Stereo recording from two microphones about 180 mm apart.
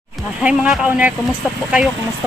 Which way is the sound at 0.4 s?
5° right (ahead or behind).